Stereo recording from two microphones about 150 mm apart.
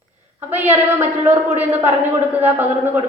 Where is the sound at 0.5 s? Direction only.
15° right (ahead or behind).